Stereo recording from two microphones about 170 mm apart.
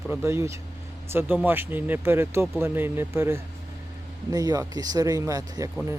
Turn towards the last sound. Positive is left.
turn(degrees=-20)  # may be behind; listen again after turning